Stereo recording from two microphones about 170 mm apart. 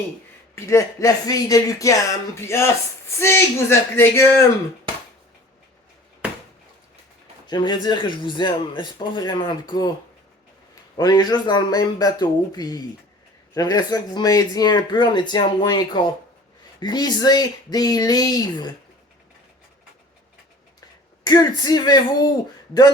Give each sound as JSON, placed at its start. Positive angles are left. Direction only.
{"t": 0.5, "sound": "speech", "side_deg": 15}
{"t": 7.4, "sound": "speech", "side_deg": 25}
{"t": 10.9, "sound": "speech", "side_deg": 25}
{"t": 21.2, "sound": "speech", "side_deg": 25}